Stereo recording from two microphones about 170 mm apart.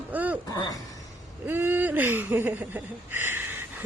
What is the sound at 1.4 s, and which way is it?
A woman's voice, 10° right (ahead or behind).